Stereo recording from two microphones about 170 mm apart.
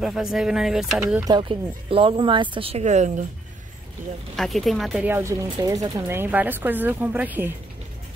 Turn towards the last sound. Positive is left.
turn(degrees=-10)  # may be behind; listen again after turning